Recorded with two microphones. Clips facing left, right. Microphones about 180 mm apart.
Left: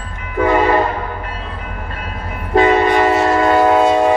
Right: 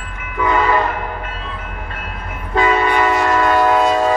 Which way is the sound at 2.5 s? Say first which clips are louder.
Left 4 dB; 30° left (ahead or behind).